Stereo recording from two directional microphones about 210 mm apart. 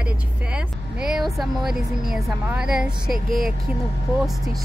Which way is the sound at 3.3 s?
45° right (ahead or behind).